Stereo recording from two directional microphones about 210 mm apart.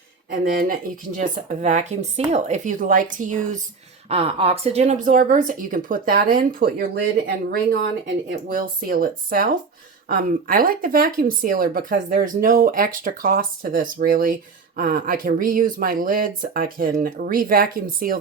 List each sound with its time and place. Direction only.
0.3 s speech: 45° right (ahead or behind)